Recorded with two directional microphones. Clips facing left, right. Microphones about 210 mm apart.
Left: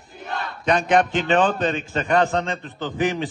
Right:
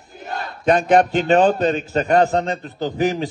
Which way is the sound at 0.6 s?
40° right (ahead or behind).